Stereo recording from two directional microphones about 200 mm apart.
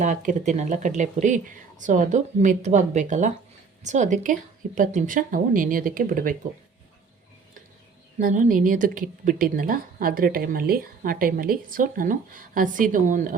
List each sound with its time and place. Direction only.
0.0 s speech: 40° right (ahead or behind)
8.2 s speech: 40° right (ahead or behind)